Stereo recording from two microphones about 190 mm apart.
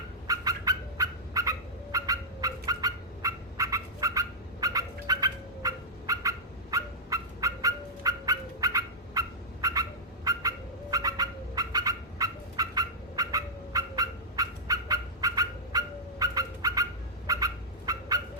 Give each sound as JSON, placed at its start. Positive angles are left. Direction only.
{"t": 0.3, "sound": "fowl", "side_deg": -20}
{"t": 17.2, "sound": "bird", "side_deg": -20}